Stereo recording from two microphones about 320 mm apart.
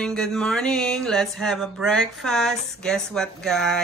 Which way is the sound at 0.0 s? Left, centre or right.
Centre.